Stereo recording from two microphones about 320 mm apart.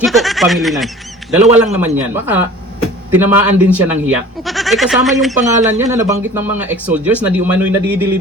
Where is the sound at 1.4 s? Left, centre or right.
Centre.